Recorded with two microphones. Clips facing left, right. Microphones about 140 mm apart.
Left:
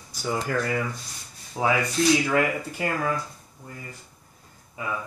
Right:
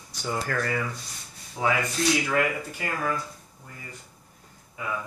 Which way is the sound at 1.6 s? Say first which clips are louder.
Left 2 dB; 25° left (ahead or behind).